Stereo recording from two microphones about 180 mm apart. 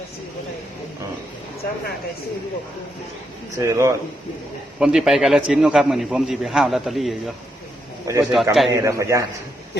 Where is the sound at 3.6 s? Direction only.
15° right (ahead or behind).